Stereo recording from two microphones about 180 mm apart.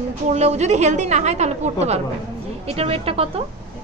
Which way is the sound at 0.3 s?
40° right (ahead or behind).